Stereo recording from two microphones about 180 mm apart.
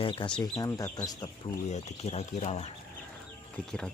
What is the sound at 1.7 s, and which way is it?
Speech, 35° left (ahead or behind).